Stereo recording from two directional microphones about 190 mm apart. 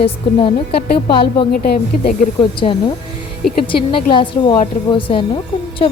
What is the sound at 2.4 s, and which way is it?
A woman's voice, 25° left (ahead or behind).